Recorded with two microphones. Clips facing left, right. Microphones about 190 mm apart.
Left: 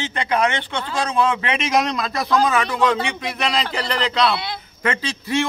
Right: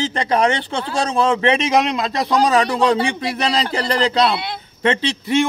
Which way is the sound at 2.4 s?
35° right (ahead or behind).